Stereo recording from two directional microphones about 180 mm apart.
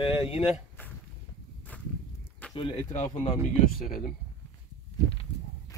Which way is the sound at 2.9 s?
40° left (ahead or behind).